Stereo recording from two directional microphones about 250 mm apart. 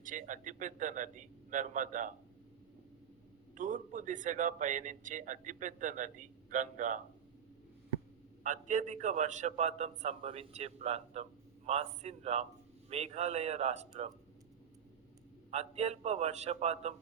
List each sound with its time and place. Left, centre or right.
0.0 s a man's voice: right
3.5 s a man's voice: right
8.4 s a man's voice: right
15.4 s a man's voice: right